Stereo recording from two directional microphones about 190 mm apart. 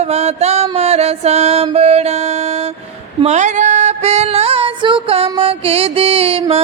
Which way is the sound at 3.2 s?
40° right (ahead or behind).